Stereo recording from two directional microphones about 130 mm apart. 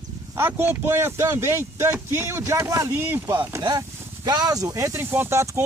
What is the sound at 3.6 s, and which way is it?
Speech, 30° right (ahead or behind).